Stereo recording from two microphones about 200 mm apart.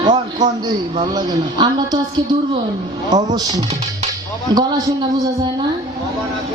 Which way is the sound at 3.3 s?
20° right (ahead or behind).